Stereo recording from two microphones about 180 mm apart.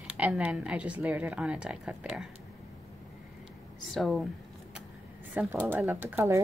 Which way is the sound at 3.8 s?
Centre (ahead or behind).